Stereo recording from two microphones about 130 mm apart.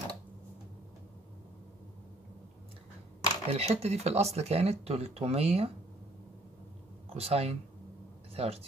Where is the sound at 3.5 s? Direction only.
50° right (ahead or behind).